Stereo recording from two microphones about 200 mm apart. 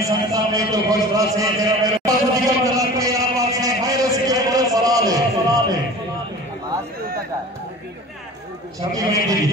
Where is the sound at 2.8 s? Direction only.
15° right (ahead or behind).